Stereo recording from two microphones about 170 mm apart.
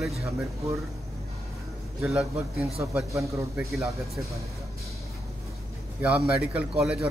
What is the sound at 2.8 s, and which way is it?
Speech, 15° right (ahead or behind).